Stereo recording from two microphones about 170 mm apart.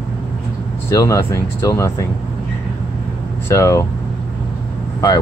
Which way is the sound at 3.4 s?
15° left (ahead or behind).